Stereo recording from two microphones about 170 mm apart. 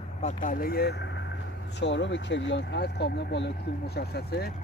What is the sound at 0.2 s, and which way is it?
Speech, 50° left (ahead or behind).